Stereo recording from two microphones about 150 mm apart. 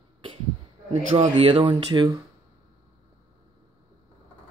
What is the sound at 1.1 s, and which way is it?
Speech, 55° right (ahead or behind).